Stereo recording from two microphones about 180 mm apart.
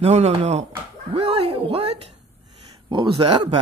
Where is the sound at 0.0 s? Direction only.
35° right (ahead or behind).